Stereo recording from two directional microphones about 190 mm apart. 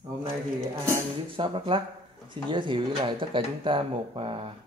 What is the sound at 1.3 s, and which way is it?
Speech, 30° right (ahead or behind).